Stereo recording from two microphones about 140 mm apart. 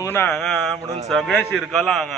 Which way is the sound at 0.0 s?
15° left (ahead or behind).